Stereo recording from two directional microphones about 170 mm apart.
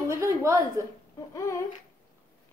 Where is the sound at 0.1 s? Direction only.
20° right (ahead or behind).